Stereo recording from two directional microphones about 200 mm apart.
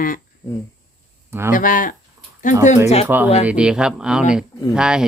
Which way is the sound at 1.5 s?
40° left (ahead or behind).